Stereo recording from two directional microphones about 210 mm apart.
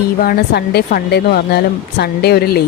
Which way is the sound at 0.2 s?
45° left (ahead or behind).